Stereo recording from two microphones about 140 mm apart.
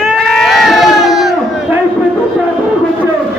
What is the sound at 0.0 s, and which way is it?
Sheep, 5° left (ahead or behind).